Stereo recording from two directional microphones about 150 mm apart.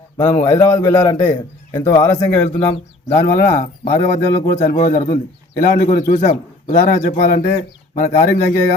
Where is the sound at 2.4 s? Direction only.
45° left (ahead or behind).